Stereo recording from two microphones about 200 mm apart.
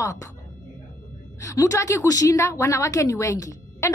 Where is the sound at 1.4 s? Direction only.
15° left (ahead or behind).